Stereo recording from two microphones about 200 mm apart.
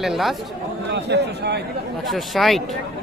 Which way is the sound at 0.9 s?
60° right (ahead or behind).